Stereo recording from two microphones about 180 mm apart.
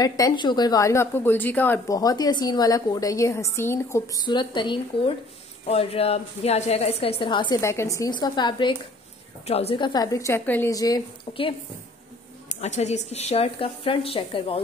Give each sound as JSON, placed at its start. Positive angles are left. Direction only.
{"t": 0.0, "sound": "a woman's voice", "side_deg": 20}
{"t": 12.4, "sound": "a woman's voice", "side_deg": 40}